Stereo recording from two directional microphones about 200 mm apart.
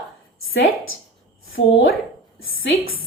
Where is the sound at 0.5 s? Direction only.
75° left (ahead or behind).